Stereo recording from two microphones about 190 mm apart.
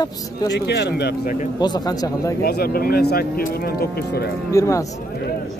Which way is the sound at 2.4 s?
55° left (ahead or behind).